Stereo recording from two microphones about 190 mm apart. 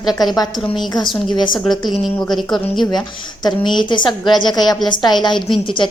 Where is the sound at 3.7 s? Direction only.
25° left (ahead or behind).